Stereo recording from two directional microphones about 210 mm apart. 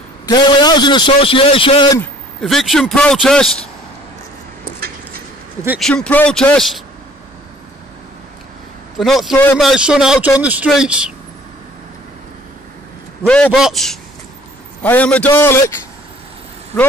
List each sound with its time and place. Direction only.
0.3 s a man's voice: 20° left (ahead or behind)
2.4 s a man's voice: centre (ahead or behind)
4.7 s a sound: 45° right (ahead or behind)
5.8 s a man's voice: 5° left (ahead or behind)
8.9 s a man's voice: centre (ahead or behind)
13.3 s a man's voice: 5° left (ahead or behind)